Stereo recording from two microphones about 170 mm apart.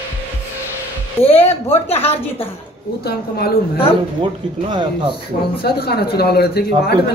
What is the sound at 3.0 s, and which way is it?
Speech, 70° left (ahead or behind).